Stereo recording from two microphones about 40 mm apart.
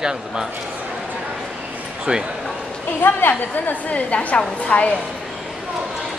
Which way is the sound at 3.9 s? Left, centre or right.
Left.